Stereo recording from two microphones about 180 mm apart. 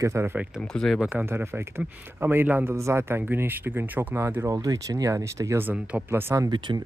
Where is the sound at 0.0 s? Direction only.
15° right (ahead or behind).